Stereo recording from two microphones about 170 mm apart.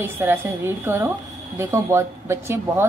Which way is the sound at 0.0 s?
15° right (ahead or behind).